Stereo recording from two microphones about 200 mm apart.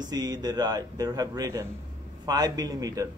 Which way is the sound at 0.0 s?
20° right (ahead or behind).